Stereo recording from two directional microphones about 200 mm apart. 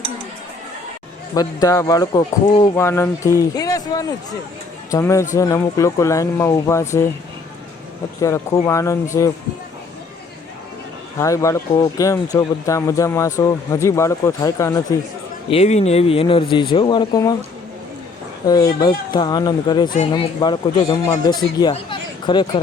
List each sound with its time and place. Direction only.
1.6 s speech: 15° left (ahead or behind)
8.2 s speech: 15° left (ahead or behind)
11.2 s speech: 15° left (ahead or behind)
15.4 s speech: 30° left (ahead or behind)
18.4 s speech: 20° left (ahead or behind)